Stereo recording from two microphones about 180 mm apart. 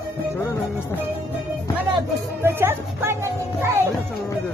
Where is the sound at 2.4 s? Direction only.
15° right (ahead or behind).